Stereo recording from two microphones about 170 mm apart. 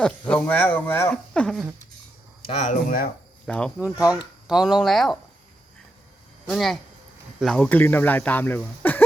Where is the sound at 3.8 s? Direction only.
5° right (ahead or behind).